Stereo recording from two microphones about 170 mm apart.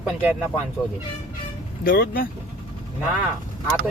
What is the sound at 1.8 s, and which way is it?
Speech, 60° left (ahead or behind).